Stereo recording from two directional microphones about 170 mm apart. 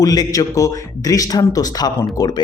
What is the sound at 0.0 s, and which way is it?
Speech, 20° left (ahead or behind).